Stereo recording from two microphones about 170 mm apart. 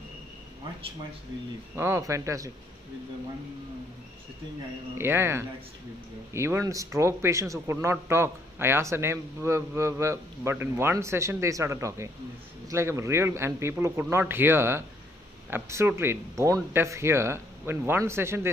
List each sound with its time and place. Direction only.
1.8 s a man's voice: 15° right (ahead or behind)
4.9 s a man's voice: 15° right (ahead or behind)